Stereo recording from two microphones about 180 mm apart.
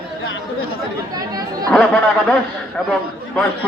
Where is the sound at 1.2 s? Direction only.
20° right (ahead or behind).